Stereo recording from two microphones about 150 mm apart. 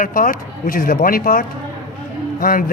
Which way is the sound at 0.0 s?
70° left (ahead or behind).